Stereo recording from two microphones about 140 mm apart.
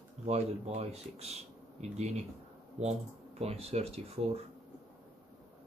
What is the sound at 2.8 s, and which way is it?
Speech, 50° right (ahead or behind).